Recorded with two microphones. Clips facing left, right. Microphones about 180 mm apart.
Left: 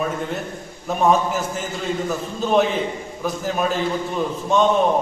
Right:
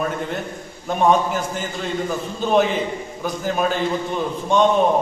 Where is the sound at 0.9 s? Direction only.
Centre (ahead or behind).